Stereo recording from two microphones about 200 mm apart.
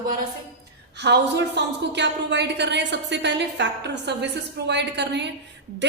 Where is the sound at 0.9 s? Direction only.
60° right (ahead or behind).